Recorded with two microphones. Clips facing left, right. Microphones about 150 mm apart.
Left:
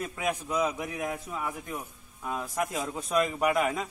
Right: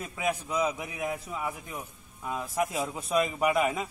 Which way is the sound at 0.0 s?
5° right (ahead or behind).